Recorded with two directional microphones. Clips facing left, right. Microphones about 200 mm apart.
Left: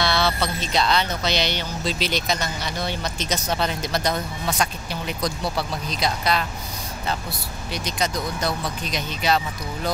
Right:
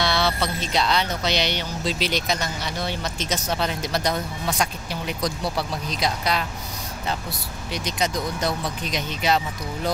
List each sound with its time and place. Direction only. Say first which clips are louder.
0.0 s speech: left 1 dB; 15° right (ahead or behind)
7.7 s speech: right 1 dB; 20° right (ahead or behind)